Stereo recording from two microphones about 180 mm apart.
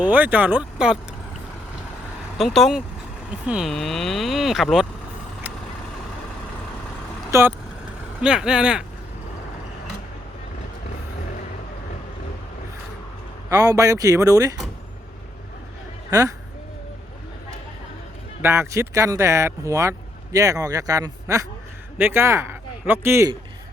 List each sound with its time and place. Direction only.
0.0 s speech: 10° right (ahead or behind)
2.4 s speech: centre (ahead or behind)
7.3 s speech: 15° right (ahead or behind)
8.2 s speech: 5° right (ahead or behind)
13.5 s speech: 20° right (ahead or behind)
16.0 s speech: 20° right (ahead or behind)
18.4 s speech: 15° right (ahead or behind)